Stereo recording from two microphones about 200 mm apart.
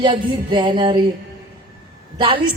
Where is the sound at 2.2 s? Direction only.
25° right (ahead or behind).